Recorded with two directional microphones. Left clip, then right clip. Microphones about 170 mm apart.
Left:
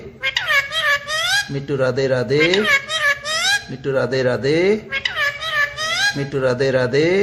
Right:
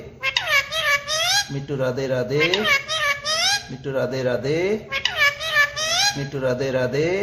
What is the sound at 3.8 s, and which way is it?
Speech, 40° left (ahead or behind).